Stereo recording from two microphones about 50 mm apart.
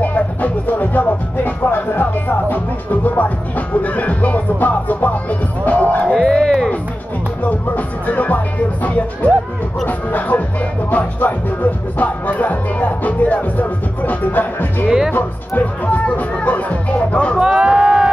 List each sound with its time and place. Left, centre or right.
0.0 s speech: left
6.1 s speech: centre
7.4 s speech: left
9.8 s speech: left
14.9 s speech: centre
15.1 s speech: left
17.4 s a sound: centre